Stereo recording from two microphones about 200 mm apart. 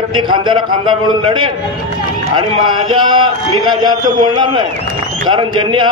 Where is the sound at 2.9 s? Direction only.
25° right (ahead or behind).